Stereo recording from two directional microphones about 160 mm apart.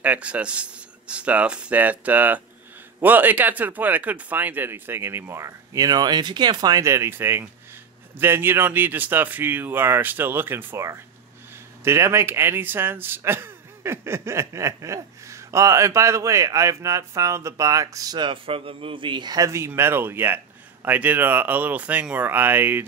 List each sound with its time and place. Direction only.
0.0 s speech: 10° right (ahead or behind)